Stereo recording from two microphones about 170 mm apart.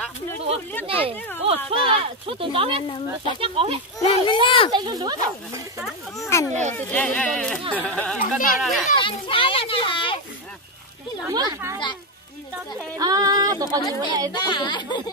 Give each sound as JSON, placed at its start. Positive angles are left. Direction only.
{"t": 0.8, "sound": "speech", "side_deg": -30}
{"t": 1.1, "sound": "speech", "side_deg": 10}
{"t": 1.4, "sound": "speech", "side_deg": -35}
{"t": 4.0, "sound": "speech", "side_deg": 30}
{"t": 4.7, "sound": "a sound", "side_deg": -25}
{"t": 6.1, "sound": "speech", "side_deg": 15}
{"t": 8.2, "sound": "speech", "side_deg": 55}
{"t": 8.5, "sound": "speech", "side_deg": 0}
{"t": 9.0, "sound": "speech", "side_deg": 30}
{"t": 11.2, "sound": "a sound", "side_deg": -20}
{"t": 12.9, "sound": "a sound", "side_deg": -20}
{"t": 14.3, "sound": "speech", "side_deg": 25}